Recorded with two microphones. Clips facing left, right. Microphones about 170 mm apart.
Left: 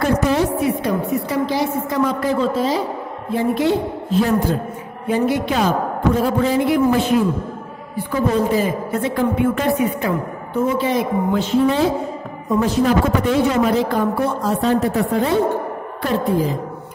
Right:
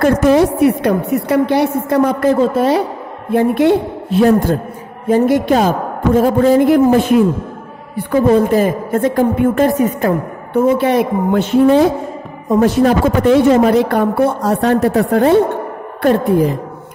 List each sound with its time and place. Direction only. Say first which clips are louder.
0.0 s a woman's voice: right 7 dB; 65° right (ahead or behind)
5.0 s a man's voice: right 6 dB; 45° right (ahead or behind)
10.5 s a woman's voice: right 6 dB; 65° right (ahead or behind)